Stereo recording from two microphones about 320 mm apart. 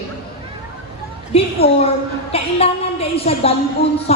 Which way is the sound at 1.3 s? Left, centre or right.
Centre.